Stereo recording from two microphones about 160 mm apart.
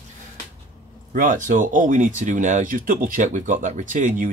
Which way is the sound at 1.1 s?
55° right (ahead or behind).